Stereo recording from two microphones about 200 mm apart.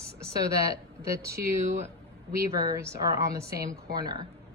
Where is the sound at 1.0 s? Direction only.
15° right (ahead or behind).